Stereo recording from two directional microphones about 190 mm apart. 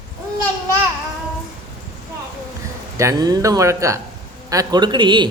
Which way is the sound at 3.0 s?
20° right (ahead or behind).